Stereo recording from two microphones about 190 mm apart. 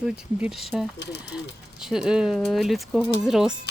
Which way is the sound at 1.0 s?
65° left (ahead or behind).